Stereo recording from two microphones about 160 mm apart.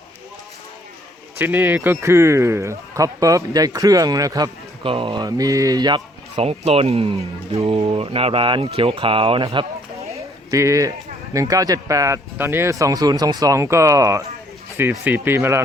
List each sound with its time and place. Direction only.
1.4 s speech: 10° right (ahead or behind)
6.3 s speech: 40° right (ahead or behind)
10.2 s a sound: 20° right (ahead or behind)
11.3 s speech: 20° right (ahead or behind)